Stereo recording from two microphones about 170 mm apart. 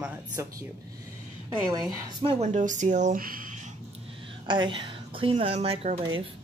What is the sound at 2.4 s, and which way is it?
Speech, 45° right (ahead or behind).